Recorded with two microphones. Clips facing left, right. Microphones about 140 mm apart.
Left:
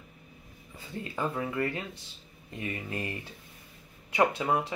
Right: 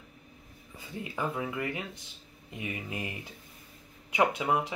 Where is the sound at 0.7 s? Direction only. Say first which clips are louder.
Left 1 dB; 15° right (ahead or behind).